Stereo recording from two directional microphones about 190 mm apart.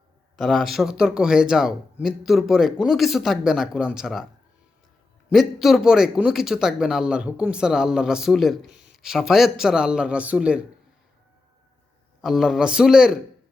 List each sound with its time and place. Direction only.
0.3 s speech: centre (ahead or behind)
5.3 s speech: centre (ahead or behind)
8.6 s speech: 40° right (ahead or behind)
8.9 s speech: centre (ahead or behind)
12.2 s speech: centre (ahead or behind)